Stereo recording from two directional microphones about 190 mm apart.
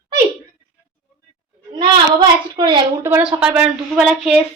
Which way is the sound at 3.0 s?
10° right (ahead or behind).